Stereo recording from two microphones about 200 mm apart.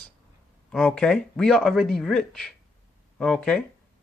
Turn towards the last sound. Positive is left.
turn(degrees=5)  # may be behind; listen again after turning